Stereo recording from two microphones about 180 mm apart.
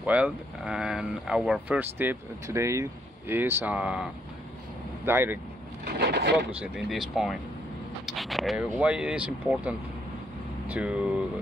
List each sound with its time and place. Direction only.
0.0 s speech: 5° right (ahead or behind)
5.9 s a sound: 65° right (ahead or behind)
6.6 s speech: 5° right (ahead or behind)